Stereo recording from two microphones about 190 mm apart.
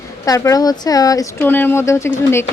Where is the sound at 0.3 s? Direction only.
15° left (ahead or behind).